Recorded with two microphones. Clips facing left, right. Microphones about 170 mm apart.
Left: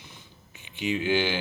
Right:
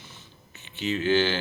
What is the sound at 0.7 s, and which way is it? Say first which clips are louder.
Speech: right 2 dB; 15° left (ahead or behind).